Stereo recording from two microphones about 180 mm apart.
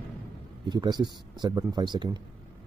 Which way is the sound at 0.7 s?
20° right (ahead or behind).